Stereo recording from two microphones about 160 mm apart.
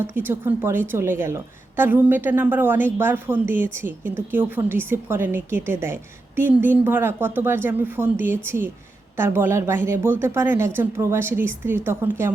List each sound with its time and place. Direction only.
0.1 s a woman's voice: 15° right (ahead or behind)